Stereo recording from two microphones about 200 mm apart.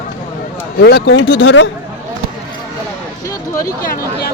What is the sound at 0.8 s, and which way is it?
Speech, 55° left (ahead or behind).